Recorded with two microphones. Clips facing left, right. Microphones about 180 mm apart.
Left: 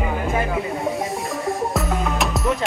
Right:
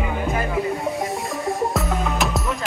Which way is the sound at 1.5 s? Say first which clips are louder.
Even; centre (ahead or behind).